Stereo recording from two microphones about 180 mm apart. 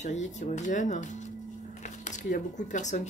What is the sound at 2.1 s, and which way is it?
Speech, 45° left (ahead or behind).